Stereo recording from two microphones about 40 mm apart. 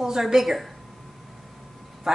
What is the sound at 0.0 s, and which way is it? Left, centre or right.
Speech, centre.